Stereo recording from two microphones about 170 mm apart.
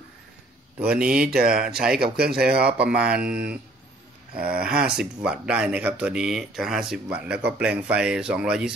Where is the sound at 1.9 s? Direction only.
65° right (ahead or behind).